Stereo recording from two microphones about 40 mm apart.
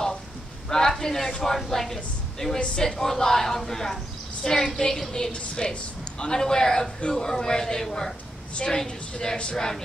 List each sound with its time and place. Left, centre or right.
0.7 s a man's voice: centre